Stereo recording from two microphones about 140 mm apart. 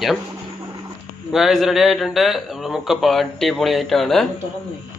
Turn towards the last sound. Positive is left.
turn(degrees=0)  # may be behind; listen again after turning